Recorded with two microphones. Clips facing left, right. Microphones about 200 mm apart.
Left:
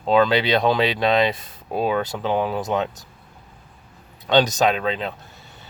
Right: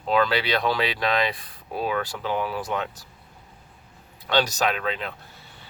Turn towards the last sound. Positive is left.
turn(degrees=25)  # may be behind; listen again after turning